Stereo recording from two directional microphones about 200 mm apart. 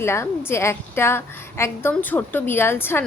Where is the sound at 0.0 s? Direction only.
10° left (ahead or behind).